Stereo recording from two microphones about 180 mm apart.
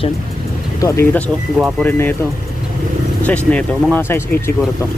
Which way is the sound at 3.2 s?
10° left (ahead or behind).